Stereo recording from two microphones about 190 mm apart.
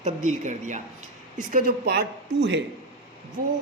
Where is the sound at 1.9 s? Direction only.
60° right (ahead or behind).